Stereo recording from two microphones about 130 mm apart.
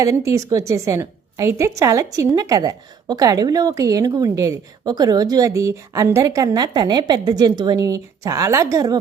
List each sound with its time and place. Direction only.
0.0 s a woman's voice: 25° right (ahead or behind)